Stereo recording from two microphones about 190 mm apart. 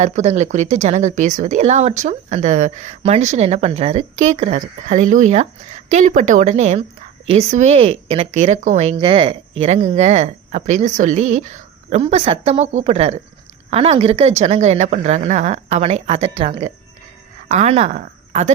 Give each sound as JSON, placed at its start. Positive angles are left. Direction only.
{"t": 0.0, "sound": "a woman's voice", "side_deg": -40}